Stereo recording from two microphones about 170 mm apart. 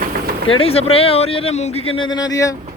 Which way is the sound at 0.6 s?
35° left (ahead or behind).